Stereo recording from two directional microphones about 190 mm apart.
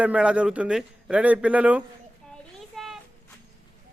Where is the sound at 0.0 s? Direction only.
5° right (ahead or behind).